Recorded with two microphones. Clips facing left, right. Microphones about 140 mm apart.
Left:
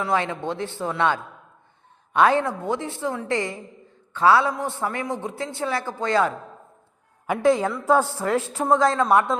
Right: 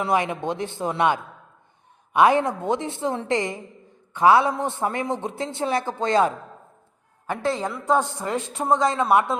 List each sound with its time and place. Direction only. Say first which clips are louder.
0.0 s a woman's voice: right 1 dB; 15° right (ahead or behind)
7.3 s a woman's voice: left 6 dB; 10° left (ahead or behind)